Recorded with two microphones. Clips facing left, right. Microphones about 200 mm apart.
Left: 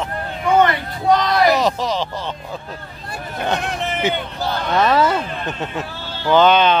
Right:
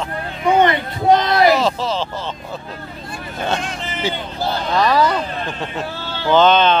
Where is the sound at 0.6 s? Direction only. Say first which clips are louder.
Right 1 dB; 25° right (ahead or behind).